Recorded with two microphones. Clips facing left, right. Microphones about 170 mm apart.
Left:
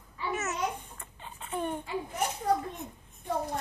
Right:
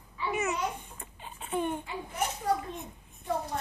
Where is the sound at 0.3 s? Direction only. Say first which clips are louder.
Right 3 dB; 15° right (ahead or behind).